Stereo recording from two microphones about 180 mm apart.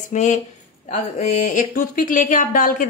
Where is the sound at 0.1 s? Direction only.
40° left (ahead or behind).